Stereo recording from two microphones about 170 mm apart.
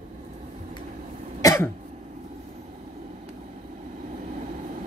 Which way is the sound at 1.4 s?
20° left (ahead or behind).